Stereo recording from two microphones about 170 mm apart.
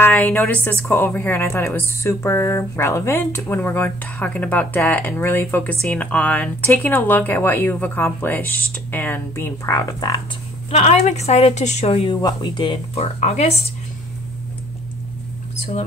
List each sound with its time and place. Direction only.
0.0 s a woman's voice: 10° left (ahead or behind)
10.7 s a woman's voice: 40° left (ahead or behind)